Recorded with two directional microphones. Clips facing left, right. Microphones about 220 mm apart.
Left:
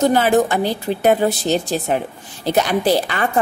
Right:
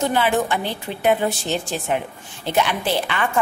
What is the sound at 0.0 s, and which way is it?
A woman's voice, 40° left (ahead or behind).